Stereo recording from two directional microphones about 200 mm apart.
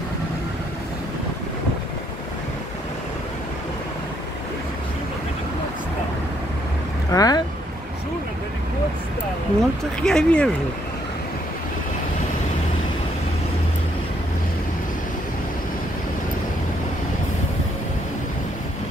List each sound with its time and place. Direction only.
7.1 s speech: 20° left (ahead or behind)
9.6 s speech: 5° left (ahead or behind)